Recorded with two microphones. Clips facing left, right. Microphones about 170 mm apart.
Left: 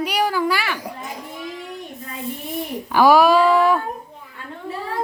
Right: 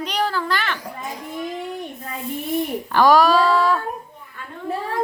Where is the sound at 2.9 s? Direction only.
10° left (ahead or behind).